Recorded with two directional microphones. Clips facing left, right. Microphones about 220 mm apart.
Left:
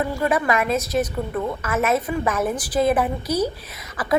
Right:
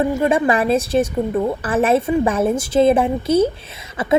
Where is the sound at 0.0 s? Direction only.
25° right (ahead or behind).